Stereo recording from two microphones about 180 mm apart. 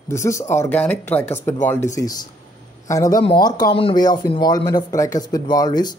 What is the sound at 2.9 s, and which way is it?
Speech, 20° left (ahead or behind).